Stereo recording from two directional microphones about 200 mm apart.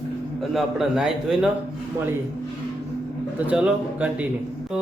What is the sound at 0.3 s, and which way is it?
Speech, centre (ahead or behind).